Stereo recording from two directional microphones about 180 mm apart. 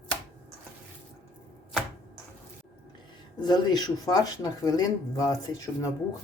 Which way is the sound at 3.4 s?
25° left (ahead or behind).